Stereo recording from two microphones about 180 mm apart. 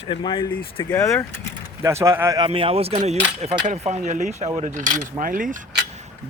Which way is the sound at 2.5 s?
30° right (ahead or behind).